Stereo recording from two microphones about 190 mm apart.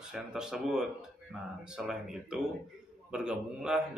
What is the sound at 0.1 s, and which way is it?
Speech, 5° right (ahead or behind).